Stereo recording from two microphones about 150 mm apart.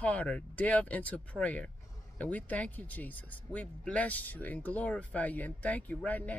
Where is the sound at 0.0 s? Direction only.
10° left (ahead or behind).